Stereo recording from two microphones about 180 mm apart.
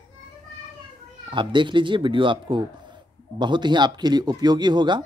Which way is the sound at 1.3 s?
25° right (ahead or behind).